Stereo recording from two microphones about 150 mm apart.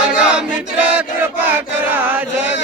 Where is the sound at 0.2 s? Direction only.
5° right (ahead or behind).